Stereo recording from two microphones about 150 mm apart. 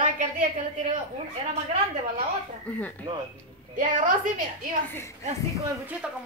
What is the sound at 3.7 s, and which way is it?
Speech, 60° right (ahead or behind).